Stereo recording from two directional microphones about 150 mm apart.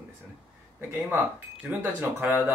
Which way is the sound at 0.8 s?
15° right (ahead or behind).